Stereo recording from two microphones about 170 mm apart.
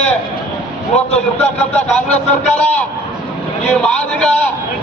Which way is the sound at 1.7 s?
10° left (ahead or behind).